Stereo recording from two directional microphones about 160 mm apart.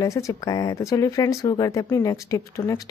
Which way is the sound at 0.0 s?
20° left (ahead or behind).